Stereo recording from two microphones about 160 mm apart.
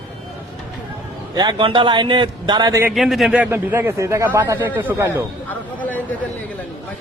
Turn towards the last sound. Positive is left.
turn(degrees=10)  # may be behind; listen again after turning